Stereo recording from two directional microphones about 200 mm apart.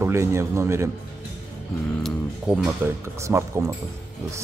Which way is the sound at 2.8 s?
15° right (ahead or behind).